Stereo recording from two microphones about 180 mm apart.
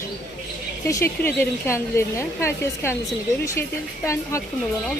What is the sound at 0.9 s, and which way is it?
Speech, 15° left (ahead or behind).